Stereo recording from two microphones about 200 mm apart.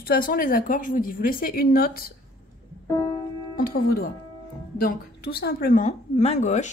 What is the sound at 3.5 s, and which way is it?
A woman's voice, 50° left (ahead or behind).